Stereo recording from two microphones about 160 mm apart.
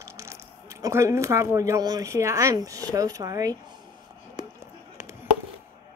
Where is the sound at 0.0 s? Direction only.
20° right (ahead or behind).